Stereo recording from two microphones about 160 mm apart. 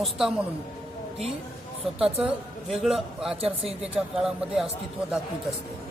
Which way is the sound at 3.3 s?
35° right (ahead or behind).